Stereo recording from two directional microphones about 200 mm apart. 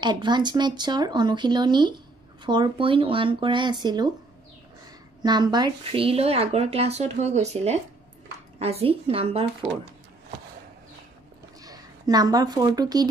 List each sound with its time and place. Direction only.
0.0 s speech: 20° right (ahead or behind)
5.2 s speech: 20° right (ahead or behind)
11.6 s speech: 20° right (ahead or behind)